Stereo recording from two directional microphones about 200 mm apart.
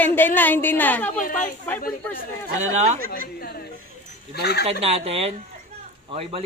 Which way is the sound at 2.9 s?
45° right (ahead or behind).